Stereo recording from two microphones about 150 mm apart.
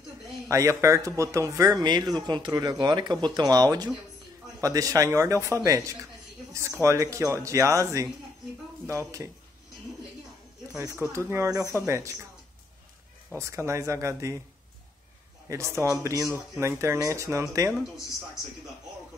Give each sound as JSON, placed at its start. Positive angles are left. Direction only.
{"t": 0.5, "sound": "speech", "side_deg": -20}
{"t": 10.8, "sound": "speech", "side_deg": -20}
{"t": 13.3, "sound": "speech", "side_deg": -15}
{"t": 15.4, "sound": "speech", "side_deg": -20}